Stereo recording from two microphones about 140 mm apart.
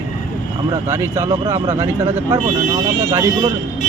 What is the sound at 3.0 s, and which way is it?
Speech, 20° right (ahead or behind).